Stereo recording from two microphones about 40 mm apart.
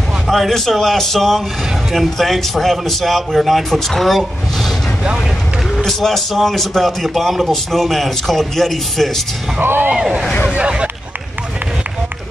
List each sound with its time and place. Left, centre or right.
0.3 s a man's voice: centre
5.9 s a man's voice: centre
9.6 s speech: right
10.6 s speech: right